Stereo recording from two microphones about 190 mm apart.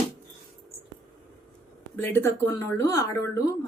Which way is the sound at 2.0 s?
10° left (ahead or behind).